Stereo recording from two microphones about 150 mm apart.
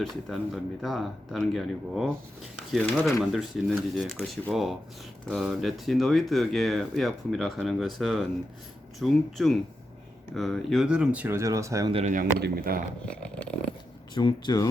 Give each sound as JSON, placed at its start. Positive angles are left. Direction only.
{"t": 0.0, "sound": "speech", "side_deg": 0}
{"t": 3.3, "sound": "speech", "side_deg": 0}
{"t": 12.0, "sound": "speech", "side_deg": -75}
{"t": 13.1, "sound": "a sound", "side_deg": 5}
{"t": 14.1, "sound": "speech", "side_deg": 30}